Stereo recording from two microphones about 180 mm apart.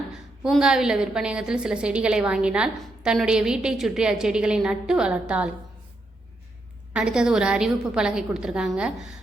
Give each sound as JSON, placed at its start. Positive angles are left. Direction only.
{"t": 0.1, "sound": "a woman's voice", "side_deg": -5}
{"t": 6.9, "sound": "a woman's voice", "side_deg": -5}